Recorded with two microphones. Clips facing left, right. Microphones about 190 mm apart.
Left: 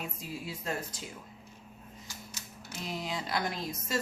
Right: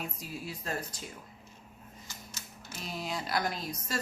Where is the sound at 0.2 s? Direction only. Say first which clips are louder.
Left 1 dB; 25° left (ahead or behind).